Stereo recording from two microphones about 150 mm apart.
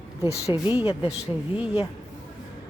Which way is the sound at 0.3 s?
20° left (ahead or behind).